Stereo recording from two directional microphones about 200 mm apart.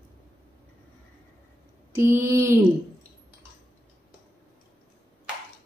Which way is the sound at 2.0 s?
15° right (ahead or behind).